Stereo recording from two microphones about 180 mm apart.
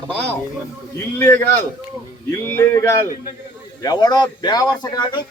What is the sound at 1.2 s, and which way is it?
Speech, 10° left (ahead or behind).